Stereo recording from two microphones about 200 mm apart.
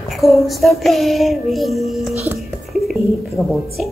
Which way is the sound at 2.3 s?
Centre (ahead or behind).